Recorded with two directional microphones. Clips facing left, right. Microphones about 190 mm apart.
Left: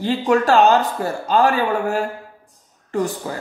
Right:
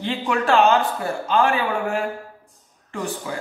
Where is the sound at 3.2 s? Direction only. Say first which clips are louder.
Left 2 dB; 40° left (ahead or behind).